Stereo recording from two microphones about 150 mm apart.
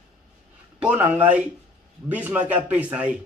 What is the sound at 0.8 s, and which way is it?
Speech, 10° right (ahead or behind).